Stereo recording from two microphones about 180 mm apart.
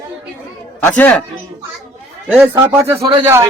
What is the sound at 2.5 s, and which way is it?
Speech, 20° right (ahead or behind).